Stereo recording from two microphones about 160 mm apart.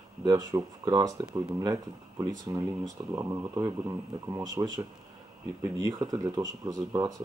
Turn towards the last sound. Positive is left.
turn(degrees=-20)  # may be behind; listen again after turning